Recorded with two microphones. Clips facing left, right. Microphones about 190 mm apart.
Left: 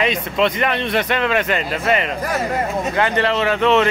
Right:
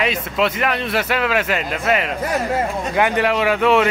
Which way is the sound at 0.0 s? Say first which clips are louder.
Left 1 dB; 5° right (ahead or behind).